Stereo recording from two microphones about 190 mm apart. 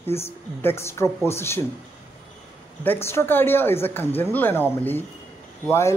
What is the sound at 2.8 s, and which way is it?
A man's voice, 10° left (ahead or behind).